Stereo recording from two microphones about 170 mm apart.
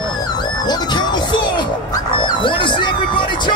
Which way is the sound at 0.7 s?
25° left (ahead or behind).